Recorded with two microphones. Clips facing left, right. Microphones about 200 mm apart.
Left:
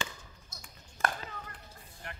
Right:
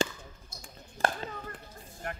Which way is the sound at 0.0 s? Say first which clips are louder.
Right 10 dB; 30° right (ahead or behind).